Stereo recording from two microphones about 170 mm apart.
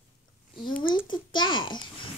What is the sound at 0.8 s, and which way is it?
A child's voice, 30° left (ahead or behind).